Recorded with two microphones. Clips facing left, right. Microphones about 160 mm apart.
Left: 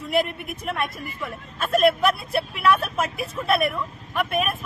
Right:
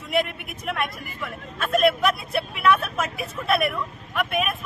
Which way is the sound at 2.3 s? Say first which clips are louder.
Even; 35° left (ahead or behind).